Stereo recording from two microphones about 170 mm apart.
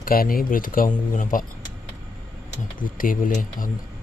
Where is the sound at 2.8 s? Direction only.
55° left (ahead or behind).